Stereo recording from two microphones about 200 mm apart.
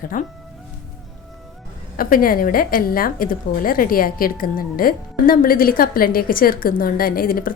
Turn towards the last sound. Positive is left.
turn(degrees=45)  # may be behind; listen again after turning